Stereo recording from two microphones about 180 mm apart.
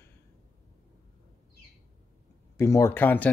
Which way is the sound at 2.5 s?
15° left (ahead or behind).